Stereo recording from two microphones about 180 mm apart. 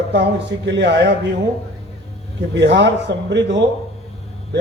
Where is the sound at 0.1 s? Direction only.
75° right (ahead or behind).